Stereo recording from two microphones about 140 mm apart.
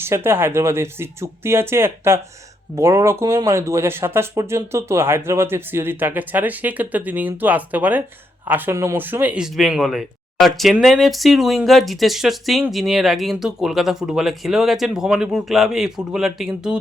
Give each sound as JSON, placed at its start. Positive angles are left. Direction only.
{"t": 0.0, "sound": "speech", "side_deg": -15}